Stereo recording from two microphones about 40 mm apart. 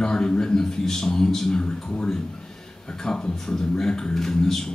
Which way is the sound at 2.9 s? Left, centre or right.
Centre.